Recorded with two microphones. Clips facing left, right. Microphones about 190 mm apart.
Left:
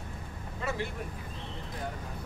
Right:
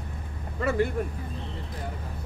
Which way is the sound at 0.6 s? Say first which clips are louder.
Right 9 dB; 55° right (ahead or behind).